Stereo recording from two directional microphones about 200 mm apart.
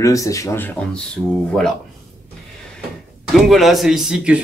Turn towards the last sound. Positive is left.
turn(degrees=-5)  # may be behind; listen again after turning